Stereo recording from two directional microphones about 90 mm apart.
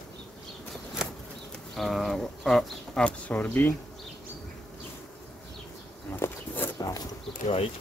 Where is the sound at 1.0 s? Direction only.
5° right (ahead or behind).